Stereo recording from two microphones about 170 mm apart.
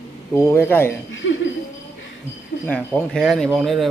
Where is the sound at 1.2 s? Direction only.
90° left.